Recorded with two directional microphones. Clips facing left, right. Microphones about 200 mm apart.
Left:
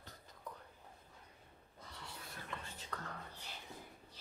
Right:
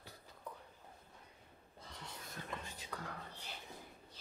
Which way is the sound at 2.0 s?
15° right (ahead or behind).